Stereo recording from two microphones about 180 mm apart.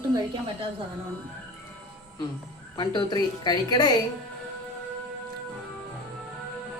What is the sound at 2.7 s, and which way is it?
A woman's voice, 25° left (ahead or behind).